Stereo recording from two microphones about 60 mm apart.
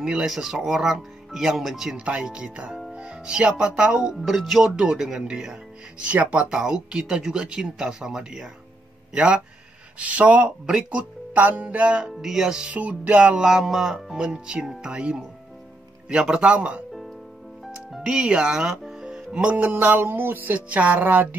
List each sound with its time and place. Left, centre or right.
0.0 s speech: centre
2.0 s speech: centre
6.0 s speech: right
6.5 s speech: centre
12.1 s speech: centre
17.6 s music: centre
19.6 s music: right
20.5 s speech: right